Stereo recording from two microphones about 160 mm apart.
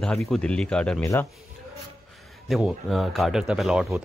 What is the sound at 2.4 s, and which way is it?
Speech, centre (ahead or behind).